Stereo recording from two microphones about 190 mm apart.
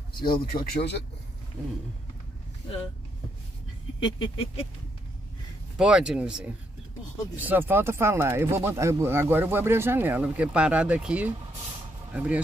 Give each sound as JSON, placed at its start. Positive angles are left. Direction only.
{"t": 0.2, "sound": "speech", "side_deg": 50}
{"t": 4.0, "sound": "a sound", "side_deg": 30}
{"t": 5.8, "sound": "speech", "side_deg": -5}